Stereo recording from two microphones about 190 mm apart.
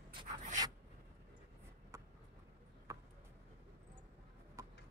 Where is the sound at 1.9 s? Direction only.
15° right (ahead or behind).